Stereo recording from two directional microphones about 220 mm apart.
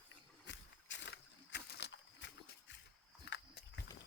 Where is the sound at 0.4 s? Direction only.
55° left (ahead or behind).